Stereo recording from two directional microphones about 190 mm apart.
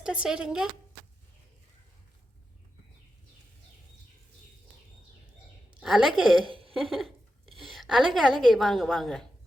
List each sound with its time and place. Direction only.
0.0 s a woman's voice: 5° right (ahead or behind)
5.8 s a woman's voice: centre (ahead or behind)
6.4 s a sound: 30° right (ahead or behind)
6.7 s a woman's voice: centre (ahead or behind)